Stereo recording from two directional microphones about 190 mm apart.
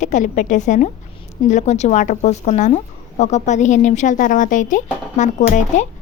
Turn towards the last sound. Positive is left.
turn(degrees=40)  # may be behind; listen again after turning